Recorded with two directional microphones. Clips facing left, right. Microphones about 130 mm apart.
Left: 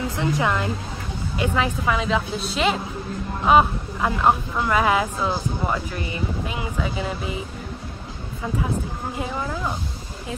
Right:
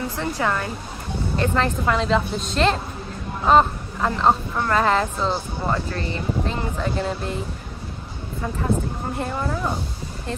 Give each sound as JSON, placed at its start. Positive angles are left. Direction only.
{"t": 0.2, "sound": "speech", "side_deg": 15}